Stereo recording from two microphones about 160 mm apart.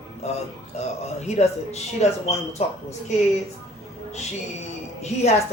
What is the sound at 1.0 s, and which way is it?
Speech, 40° left (ahead or behind).